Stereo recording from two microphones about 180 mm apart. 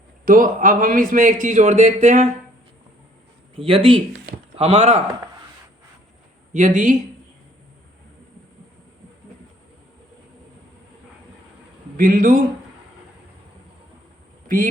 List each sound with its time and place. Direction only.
0.3 s a man's voice: 50° right (ahead or behind)
3.5 s speech: 30° right (ahead or behind)
6.5 s speech: 40° right (ahead or behind)
11.9 s a man's voice: 50° right (ahead or behind)
14.4 s a man's voice: 50° right (ahead or behind)